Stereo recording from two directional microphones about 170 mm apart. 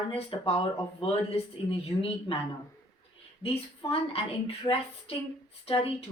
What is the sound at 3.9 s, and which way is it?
Speech, 35° left (ahead or behind).